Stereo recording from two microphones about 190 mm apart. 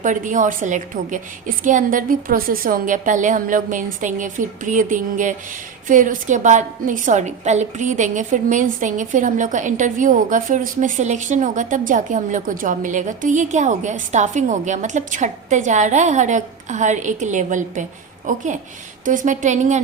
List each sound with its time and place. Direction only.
0.0 s a woman's voice: 40° right (ahead or behind)